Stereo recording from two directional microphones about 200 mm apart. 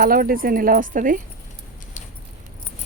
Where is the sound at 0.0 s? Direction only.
45° right (ahead or behind).